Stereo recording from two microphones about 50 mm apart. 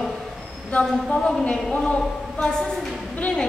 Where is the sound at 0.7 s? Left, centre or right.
Left.